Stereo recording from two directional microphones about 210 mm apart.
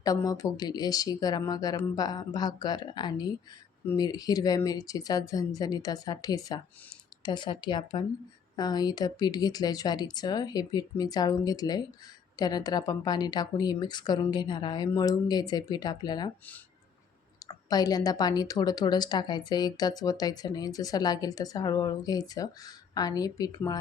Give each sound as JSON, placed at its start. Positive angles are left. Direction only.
{"t": 0.0, "sound": "a woman's voice", "side_deg": 15}
{"t": 17.4, "sound": "a woman's voice", "side_deg": 20}